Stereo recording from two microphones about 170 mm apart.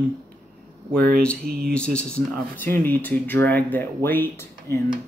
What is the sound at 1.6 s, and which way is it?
Speech, 5° left (ahead or behind).